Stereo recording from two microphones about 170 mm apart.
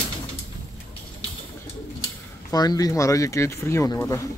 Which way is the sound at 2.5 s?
20° left (ahead or behind).